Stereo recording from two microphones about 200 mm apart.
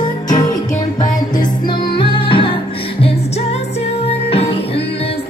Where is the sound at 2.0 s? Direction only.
25° left (ahead or behind).